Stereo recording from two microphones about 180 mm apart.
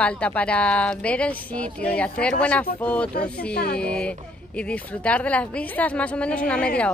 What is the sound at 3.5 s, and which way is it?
Speech, 60° left (ahead or behind).